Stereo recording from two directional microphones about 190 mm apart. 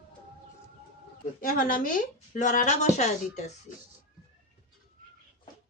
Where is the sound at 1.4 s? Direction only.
50° left (ahead or behind).